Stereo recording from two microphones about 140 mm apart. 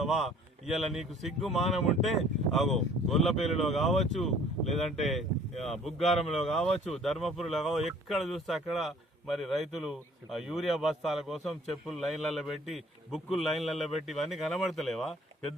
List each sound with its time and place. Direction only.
0.0 s speech: centre (ahead or behind)
6.7 s speech: 50° left (ahead or behind)
6.9 s speech: centre (ahead or behind)